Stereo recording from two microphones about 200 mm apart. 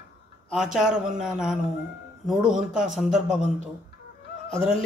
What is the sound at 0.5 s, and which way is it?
A man's voice, 5° right (ahead or behind).